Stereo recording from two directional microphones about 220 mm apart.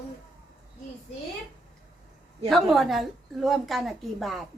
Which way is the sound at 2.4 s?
Centre (ahead or behind).